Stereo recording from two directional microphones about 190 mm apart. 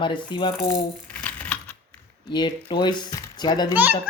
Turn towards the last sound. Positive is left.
turn(degrees=-10)  # may be behind; listen again after turning